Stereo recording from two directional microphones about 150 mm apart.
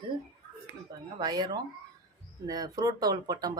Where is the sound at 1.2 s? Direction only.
25° right (ahead or behind).